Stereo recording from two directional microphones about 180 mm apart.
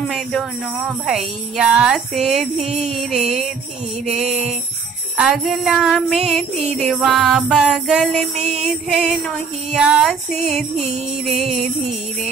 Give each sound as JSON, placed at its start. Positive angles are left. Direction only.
{"t": 0.1, "sound": "speech", "side_deg": 0}
{"t": 4.3, "sound": "music", "side_deg": -40}
{"t": 5.1, "sound": "speech", "side_deg": -5}